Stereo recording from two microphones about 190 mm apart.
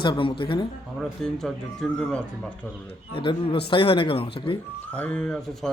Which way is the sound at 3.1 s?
30° left (ahead or behind).